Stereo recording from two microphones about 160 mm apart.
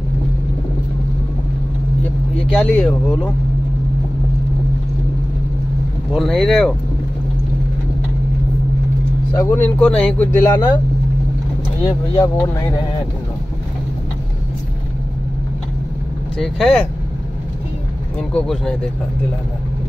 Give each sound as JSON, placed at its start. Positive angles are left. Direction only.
{"t": 2.5, "sound": "speech", "side_deg": 5}
{"t": 6.1, "sound": "speech", "side_deg": 0}
{"t": 9.4, "sound": "speech", "side_deg": 10}
{"t": 12.2, "sound": "speech", "side_deg": 20}
{"t": 16.3, "sound": "speech", "side_deg": 5}
{"t": 18.3, "sound": "speech", "side_deg": 5}